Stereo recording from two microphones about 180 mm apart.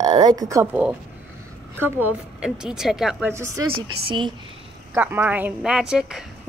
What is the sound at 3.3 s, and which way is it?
Speech, 15° right (ahead or behind).